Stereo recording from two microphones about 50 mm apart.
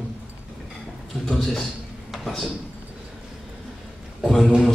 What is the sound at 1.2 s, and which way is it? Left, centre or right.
A man's voice, centre.